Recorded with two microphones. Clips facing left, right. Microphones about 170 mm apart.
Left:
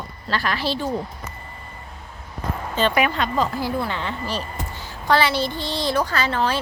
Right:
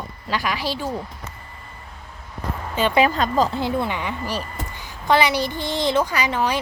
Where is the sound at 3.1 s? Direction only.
40° right (ahead or behind).